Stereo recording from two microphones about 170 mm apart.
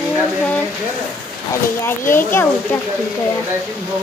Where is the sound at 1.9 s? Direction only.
15° left (ahead or behind).